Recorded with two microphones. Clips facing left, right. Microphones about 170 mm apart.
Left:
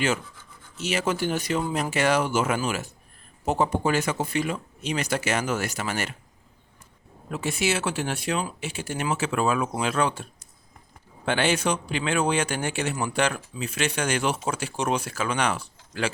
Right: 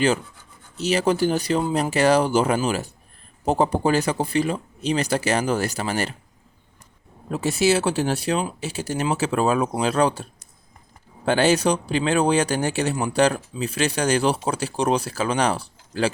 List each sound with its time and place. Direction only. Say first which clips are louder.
0.8 s speech: right 6 dB; 35° right (ahead or behind)
7.3 s speech: right 6 dB; 35° right (ahead or behind)
11.3 s speech: right 5 dB; 35° right (ahead or behind)